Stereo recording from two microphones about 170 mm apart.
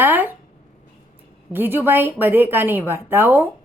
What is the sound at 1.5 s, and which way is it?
A woman's voice, 10° right (ahead or behind).